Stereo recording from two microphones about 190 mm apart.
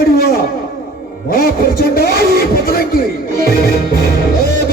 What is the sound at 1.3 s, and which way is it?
Speech, 50° left (ahead or behind).